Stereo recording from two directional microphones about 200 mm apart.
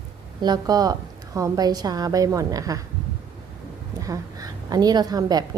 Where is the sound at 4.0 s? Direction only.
15° right (ahead or behind).